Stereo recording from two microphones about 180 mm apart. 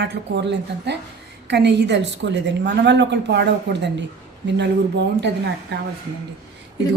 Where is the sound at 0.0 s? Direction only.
70° right (ahead or behind).